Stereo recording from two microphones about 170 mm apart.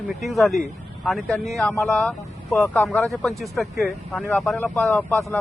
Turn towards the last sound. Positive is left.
turn(degrees=10)  # may be behind; listen again after turning